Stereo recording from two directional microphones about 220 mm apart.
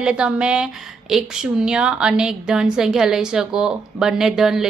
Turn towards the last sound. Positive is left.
turn(degrees=0)  # may be behind; listen again after turning